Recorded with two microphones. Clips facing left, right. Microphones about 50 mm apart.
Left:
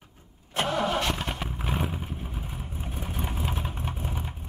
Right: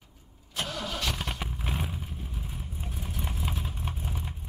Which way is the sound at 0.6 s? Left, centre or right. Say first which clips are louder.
Left 8 dB; left.